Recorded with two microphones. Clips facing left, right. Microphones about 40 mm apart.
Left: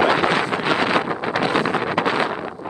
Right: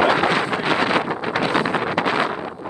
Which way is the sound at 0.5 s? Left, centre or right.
Left.